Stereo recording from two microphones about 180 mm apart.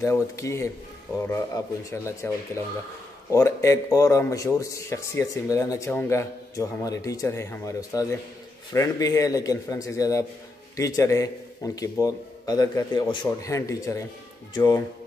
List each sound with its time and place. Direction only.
0.0 s a man's voice: 15° left (ahead or behind)